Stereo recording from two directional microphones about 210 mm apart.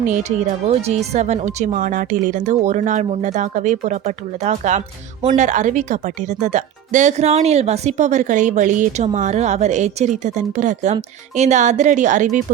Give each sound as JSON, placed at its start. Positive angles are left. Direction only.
{"t": 0.1, "sound": "speech", "side_deg": -35}